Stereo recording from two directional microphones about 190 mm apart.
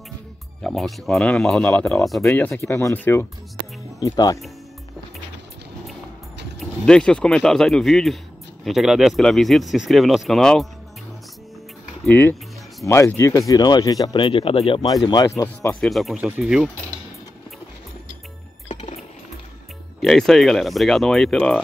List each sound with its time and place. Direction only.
0.7 s speech: centre (ahead or behind); by 4.4 s 20° left (ahead or behind)
6.6 s speech: 5° left (ahead or behind)
12.1 s speech: 10° left (ahead or behind)
15.7 s speech: centre (ahead or behind)
18.7 s music: 35° left (ahead or behind)
20.0 s speech: centre (ahead or behind)